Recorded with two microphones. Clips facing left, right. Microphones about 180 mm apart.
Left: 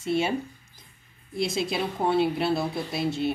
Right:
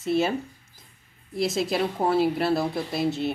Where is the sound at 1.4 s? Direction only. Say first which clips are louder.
Right 3 dB; centre (ahead or behind).